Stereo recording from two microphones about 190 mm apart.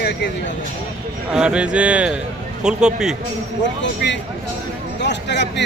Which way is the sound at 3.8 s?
70° left (ahead or behind).